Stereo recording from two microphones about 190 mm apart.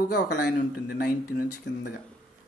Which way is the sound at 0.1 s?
55° left (ahead or behind).